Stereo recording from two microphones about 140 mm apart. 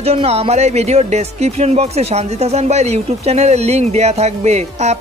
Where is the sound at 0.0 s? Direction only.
45° right (ahead or behind).